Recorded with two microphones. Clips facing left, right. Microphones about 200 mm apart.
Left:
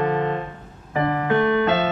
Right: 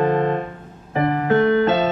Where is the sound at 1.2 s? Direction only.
35° right (ahead or behind).